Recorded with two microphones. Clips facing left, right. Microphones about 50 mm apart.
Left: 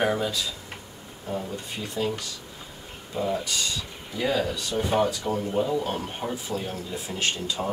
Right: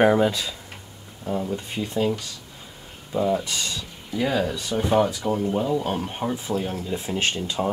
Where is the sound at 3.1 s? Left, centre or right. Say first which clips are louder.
Right 4 dB; centre.